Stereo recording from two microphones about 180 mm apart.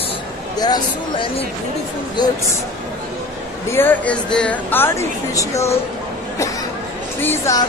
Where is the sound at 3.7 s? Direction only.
10° left (ahead or behind).